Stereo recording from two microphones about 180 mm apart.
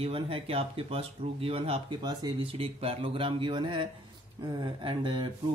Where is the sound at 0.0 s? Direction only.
30° right (ahead or behind).